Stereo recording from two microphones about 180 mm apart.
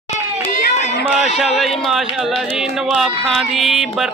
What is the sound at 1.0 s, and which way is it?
Speech, centre (ahead or behind).